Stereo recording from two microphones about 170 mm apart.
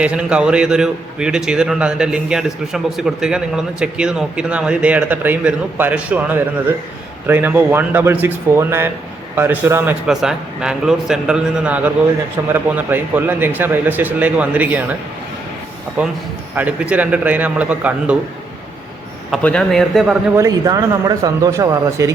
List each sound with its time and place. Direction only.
0.0 s a man's voice: 5° right (ahead or behind)
16.0 s a man's voice: 10° right (ahead or behind)
19.3 s a man's voice: 5° left (ahead or behind)
20.3 s speech: 20° right (ahead or behind)